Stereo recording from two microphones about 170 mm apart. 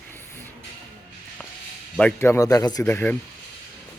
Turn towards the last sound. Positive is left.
turn(degrees=10)  # may be behind; listen again after turning